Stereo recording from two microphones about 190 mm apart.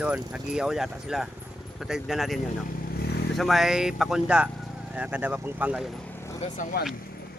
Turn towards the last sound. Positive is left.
turn(degrees=50)  # may be behind; listen again after turning